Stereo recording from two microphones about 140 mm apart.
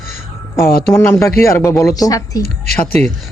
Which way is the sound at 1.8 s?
25° left (ahead or behind).